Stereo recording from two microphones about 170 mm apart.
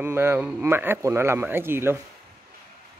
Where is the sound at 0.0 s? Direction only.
15° right (ahead or behind).